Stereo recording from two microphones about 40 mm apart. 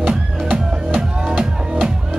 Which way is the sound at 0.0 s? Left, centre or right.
Right.